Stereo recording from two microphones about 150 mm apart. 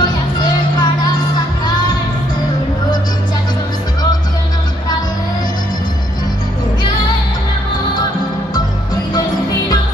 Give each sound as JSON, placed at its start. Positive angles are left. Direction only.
{"t": 0.0, "sound": "music", "side_deg": 30}